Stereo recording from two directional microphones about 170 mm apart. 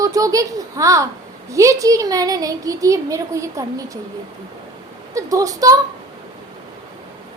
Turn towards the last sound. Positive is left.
turn(degrees=-20)  # may be behind; listen again after turning